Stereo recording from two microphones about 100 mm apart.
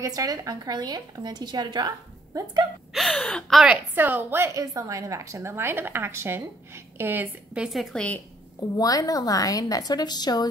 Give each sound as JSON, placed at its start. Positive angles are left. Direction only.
{"t": 0.0, "sound": "speech", "side_deg": -35}
{"t": 2.9, "sound": "gasp", "side_deg": 0}
{"t": 3.6, "sound": "a woman's voice", "side_deg": -15}
{"t": 7.5, "sound": "gasp", "side_deg": -5}
{"t": 8.5, "sound": "a woman's voice", "side_deg": 40}